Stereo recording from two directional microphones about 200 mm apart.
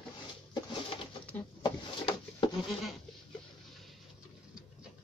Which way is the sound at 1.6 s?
20° left (ahead or behind).